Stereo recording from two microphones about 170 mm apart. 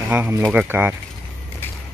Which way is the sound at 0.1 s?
10° right (ahead or behind).